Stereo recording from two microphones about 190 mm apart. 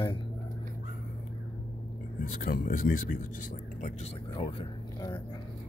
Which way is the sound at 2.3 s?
50° left (ahead or behind).